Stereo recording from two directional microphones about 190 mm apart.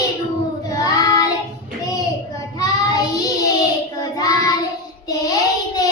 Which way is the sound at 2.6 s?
20° left (ahead or behind).